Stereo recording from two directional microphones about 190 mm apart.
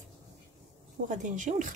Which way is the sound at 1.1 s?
40° right (ahead or behind).